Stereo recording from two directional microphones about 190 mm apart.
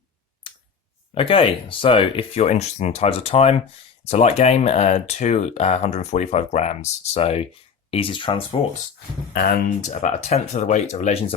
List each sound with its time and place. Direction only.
0.4 s clicking: 25° left (ahead or behind)
1.1 s speech: 30° left (ahead or behind)
9.3 s speech: 50° left (ahead or behind)